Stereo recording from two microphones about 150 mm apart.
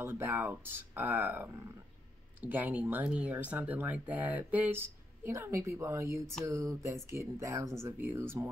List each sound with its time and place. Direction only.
0.0 s speech: 15° right (ahead or behind)